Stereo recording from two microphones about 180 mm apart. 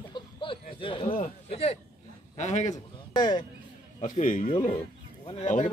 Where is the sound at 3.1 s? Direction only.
25° left (ahead or behind).